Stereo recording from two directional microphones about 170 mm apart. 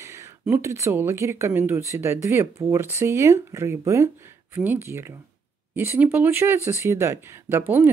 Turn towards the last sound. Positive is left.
turn(degrees=-10)  # may be behind; listen again after turning